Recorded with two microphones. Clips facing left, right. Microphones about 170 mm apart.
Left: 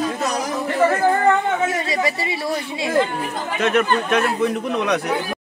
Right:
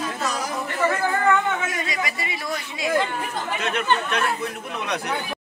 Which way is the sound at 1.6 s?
30° left (ahead or behind).